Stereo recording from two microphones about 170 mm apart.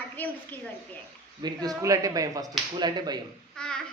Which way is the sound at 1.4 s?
25° right (ahead or behind).